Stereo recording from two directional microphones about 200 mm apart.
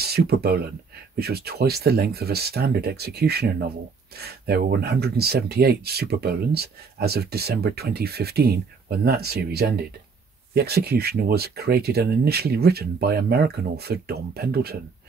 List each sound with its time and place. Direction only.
0.0 s speech: 50° right (ahead or behind)